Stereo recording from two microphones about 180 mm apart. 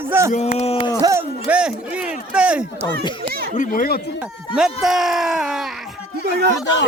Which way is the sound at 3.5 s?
50° left (ahead or behind).